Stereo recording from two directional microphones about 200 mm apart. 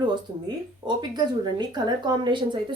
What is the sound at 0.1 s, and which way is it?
Speech, 20° right (ahead or behind).